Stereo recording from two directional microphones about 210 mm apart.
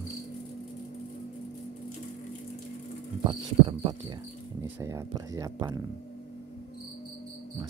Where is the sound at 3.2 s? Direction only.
20° right (ahead or behind).